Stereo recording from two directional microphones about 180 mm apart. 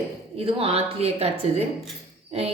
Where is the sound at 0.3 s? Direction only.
35° right (ahead or behind).